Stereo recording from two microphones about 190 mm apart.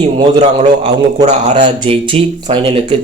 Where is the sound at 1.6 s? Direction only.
25° right (ahead or behind).